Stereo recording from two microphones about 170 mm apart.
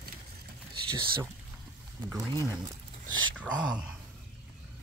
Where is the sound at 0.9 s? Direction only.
30° right (ahead or behind).